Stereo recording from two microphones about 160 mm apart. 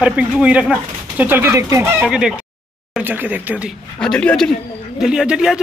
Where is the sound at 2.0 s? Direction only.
5° right (ahead or behind).